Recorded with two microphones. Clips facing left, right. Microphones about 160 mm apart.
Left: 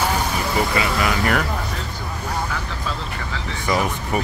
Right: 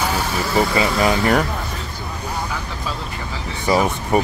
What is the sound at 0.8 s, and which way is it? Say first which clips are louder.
Speech: right 4 dB; 25° right (ahead or behind).